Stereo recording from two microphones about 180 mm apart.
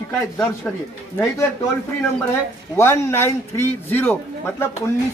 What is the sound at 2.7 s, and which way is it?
Speech, 15° left (ahead or behind).